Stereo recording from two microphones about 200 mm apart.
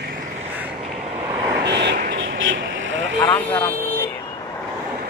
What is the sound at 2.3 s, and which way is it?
Vehicle, 70° right (ahead or behind).